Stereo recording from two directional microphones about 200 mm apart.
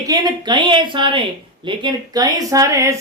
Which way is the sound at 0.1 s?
20° right (ahead or behind).